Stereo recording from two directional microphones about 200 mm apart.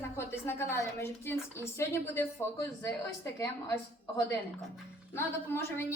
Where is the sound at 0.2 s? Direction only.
10° left (ahead or behind).